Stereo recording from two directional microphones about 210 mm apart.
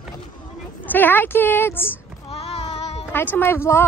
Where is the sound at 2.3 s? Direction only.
30° left (ahead or behind).